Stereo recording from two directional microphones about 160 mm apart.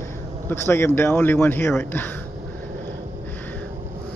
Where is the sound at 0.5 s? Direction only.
15° left (ahead or behind).